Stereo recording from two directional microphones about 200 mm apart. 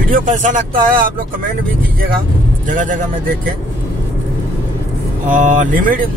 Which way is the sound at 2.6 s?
40° right (ahead or behind).